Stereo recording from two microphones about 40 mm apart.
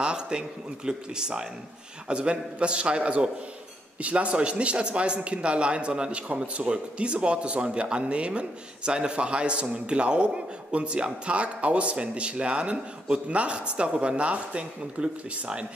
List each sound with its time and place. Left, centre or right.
0.0 s speech: right